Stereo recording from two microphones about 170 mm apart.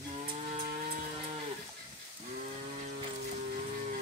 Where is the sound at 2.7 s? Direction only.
30° right (ahead or behind).